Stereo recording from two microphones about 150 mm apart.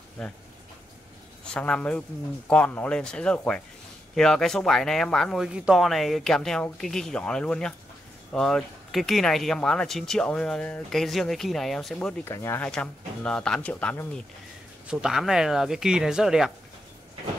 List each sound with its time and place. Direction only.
0.2 s speech: 5° left (ahead or behind)
1.5 s speech: 10° left (ahead or behind)
12.3 s speech: 15° left (ahead or behind)
12.6 s speech: 5° left (ahead or behind)
14.9 s speech: 5° right (ahead or behind)